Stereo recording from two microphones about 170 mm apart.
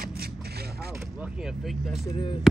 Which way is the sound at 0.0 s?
65° right (ahead or behind).